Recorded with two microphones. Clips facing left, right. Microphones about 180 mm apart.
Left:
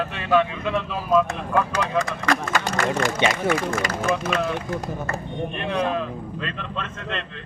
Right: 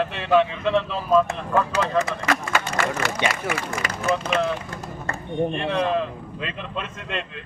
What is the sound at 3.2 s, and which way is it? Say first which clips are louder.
Speech: left 3 dB; 25° left (ahead or behind).